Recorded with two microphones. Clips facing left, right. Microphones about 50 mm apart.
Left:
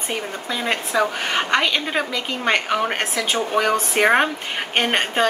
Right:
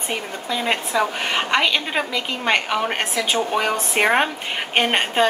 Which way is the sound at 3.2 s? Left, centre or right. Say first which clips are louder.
Even; centre.